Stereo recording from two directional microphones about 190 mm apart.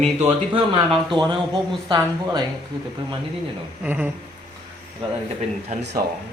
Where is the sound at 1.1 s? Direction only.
25° right (ahead or behind).